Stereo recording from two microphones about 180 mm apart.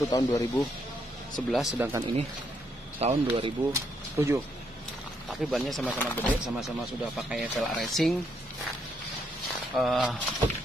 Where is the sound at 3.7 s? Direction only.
15° right (ahead or behind).